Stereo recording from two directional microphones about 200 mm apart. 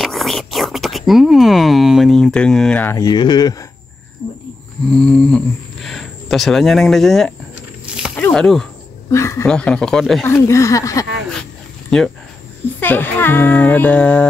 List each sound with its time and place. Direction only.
0.0 s speech: centre (ahead or behind); by 3.6 s 20° left (ahead or behind)
4.9 s speech: 5° left (ahead or behind)
7.8 s a sound: 5° right (ahead or behind)
8.2 s speech: 5° left (ahead or behind)
9.1 s speech: 15° left (ahead or behind)
10.2 s speech: 15° left (ahead or behind)
11.9 s speech: centre (ahead or behind)